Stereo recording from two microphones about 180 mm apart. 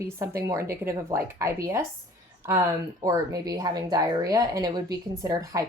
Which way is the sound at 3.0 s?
20° right (ahead or behind).